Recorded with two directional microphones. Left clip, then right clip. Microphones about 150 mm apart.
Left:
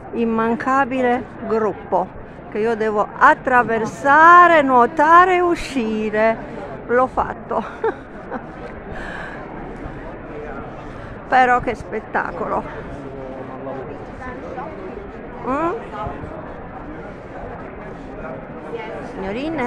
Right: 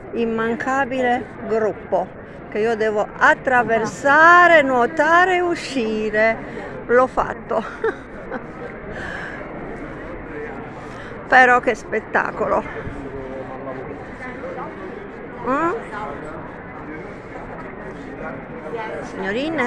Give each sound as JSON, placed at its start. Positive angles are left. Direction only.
{"t": 0.5, "sound": "speech", "side_deg": 30}
{"t": 2.5, "sound": "speech", "side_deg": 25}
{"t": 6.9, "sound": "speech", "side_deg": 10}
{"t": 11.2, "sound": "speech", "side_deg": 0}
{"t": 15.4, "sound": "speech", "side_deg": 10}
{"t": 19.2, "sound": "speech", "side_deg": 0}